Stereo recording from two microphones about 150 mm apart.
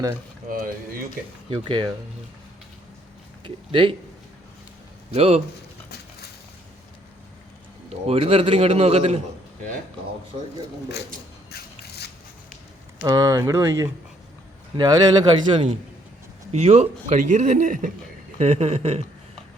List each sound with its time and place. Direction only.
0.4 s speech: 70° right (ahead or behind)
1.5 s a man's voice: 35° right (ahead or behind)
3.4 s speech: 35° right (ahead or behind)
5.1 s speech: 45° right (ahead or behind)
8.0 s a man's voice: 40° right (ahead or behind)
11.5 s scissors: 90° left
13.1 s a man's voice: 25° right (ahead or behind)
16.5 s speech: 50° right (ahead or behind)
18.3 s speech: 45° right (ahead or behind)